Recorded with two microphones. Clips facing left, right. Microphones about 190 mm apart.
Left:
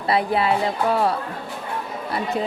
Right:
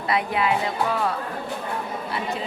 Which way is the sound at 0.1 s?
35° left (ahead or behind).